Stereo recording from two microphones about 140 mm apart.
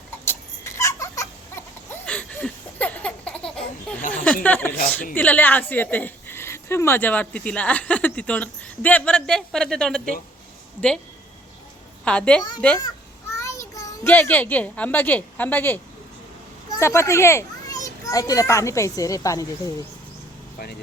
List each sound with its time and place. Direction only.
0.3 s a sound: 20° left (ahead or behind)
4.4 s a woman's voice: 10° left (ahead or behind)
12.0 s a woman's voice: 10° left (ahead or behind)
13.3 s a child's voice: 20° left (ahead or behind)